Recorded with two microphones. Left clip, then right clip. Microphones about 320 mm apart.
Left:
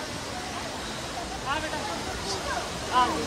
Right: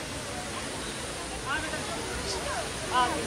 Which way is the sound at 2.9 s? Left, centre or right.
Left.